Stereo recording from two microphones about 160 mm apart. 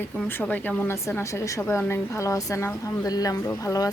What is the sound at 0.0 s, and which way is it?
A woman's voice, 15° left (ahead or behind).